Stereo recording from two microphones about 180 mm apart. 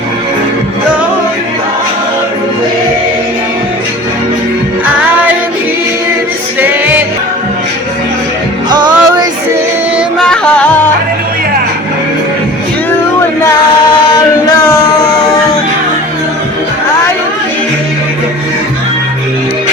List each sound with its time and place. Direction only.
6.6 s music: 10° right (ahead or behind)
8.7 s music: 25° right (ahead or behind)
10.2 s music: 5° left (ahead or behind)